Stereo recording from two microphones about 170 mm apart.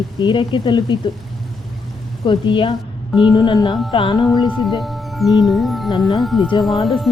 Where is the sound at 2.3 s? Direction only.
30° left (ahead or behind).